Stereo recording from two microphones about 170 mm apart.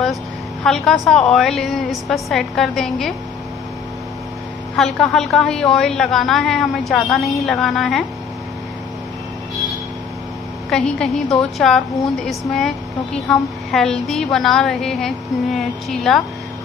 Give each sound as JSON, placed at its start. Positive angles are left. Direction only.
{"t": 0.7, "sound": "a woman's voice", "side_deg": 0}
{"t": 4.7, "sound": "a woman's voice", "side_deg": 0}
{"t": 10.7, "sound": "a woman's voice", "side_deg": 5}